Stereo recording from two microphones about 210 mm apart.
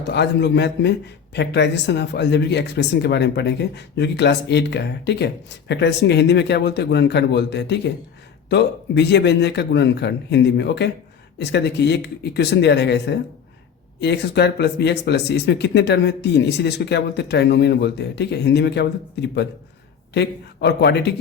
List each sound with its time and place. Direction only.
0.1 s a man's voice: 50° left (ahead or behind)